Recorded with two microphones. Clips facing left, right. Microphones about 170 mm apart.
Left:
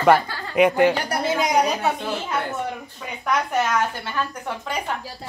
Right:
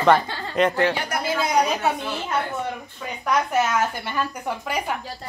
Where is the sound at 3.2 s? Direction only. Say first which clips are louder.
Right 1 dB; 5° right (ahead or behind).